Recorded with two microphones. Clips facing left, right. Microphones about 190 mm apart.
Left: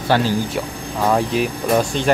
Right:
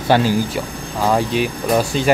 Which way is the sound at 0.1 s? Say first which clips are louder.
Right 2 dB; 15° right (ahead or behind).